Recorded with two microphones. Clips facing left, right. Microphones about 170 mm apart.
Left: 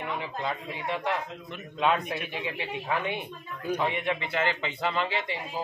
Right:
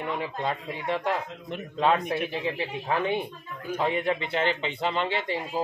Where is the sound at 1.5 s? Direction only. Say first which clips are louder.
Right 2 dB; 35° right (ahead or behind).